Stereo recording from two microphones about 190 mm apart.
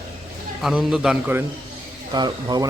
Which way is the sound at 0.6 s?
5° right (ahead or behind).